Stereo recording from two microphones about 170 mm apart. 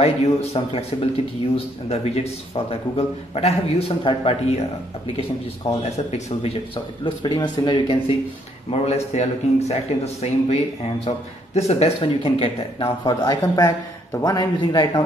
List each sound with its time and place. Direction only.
0.0 s a man's voice: 35° left (ahead or behind)
1.9 s a man's voice: 35° left (ahead or behind)
5.7 s a man's voice: 40° left (ahead or behind)
7.2 s a man's voice: 25° left (ahead or behind)